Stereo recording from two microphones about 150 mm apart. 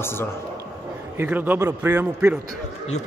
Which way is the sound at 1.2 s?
10° right (ahead or behind).